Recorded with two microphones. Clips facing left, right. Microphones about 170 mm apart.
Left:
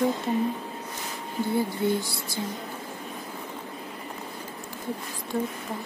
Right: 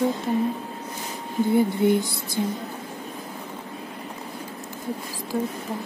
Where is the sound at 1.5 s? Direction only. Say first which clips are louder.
Right 6 dB; 20° right (ahead or behind).